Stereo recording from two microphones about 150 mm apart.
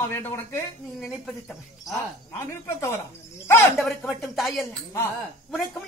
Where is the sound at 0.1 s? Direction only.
15° left (ahead or behind).